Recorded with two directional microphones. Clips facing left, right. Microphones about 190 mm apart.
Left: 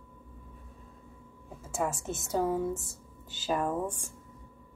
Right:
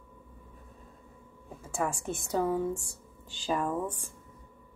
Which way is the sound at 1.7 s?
20° left (ahead or behind).